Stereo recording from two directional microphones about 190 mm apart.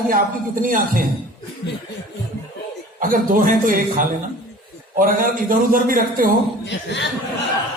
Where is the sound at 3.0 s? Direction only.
45° right (ahead or behind).